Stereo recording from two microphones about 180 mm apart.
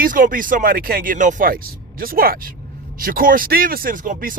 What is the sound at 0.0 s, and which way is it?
Speech, 50° right (ahead or behind).